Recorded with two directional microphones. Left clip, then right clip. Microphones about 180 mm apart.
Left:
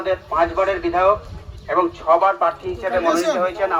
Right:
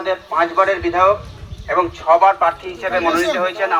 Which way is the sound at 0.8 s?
60° left (ahead or behind).